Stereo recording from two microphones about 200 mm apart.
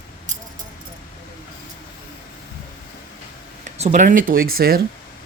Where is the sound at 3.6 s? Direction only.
35° right (ahead or behind).